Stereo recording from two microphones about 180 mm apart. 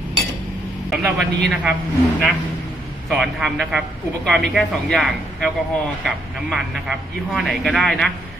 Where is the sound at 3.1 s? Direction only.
Centre (ahead or behind).